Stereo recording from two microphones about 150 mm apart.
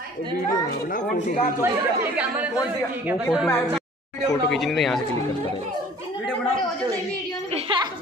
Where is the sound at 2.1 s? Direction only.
10° right (ahead or behind).